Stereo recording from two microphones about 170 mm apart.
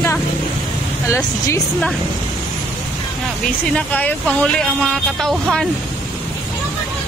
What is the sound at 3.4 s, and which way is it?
Speech, 10° left (ahead or behind).